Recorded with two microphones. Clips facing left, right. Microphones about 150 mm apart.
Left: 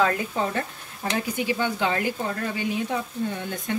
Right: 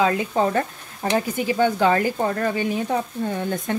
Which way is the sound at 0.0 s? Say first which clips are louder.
Right 3 dB; 20° right (ahead or behind).